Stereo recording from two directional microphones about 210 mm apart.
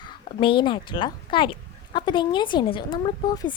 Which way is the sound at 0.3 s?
25° left (ahead or behind).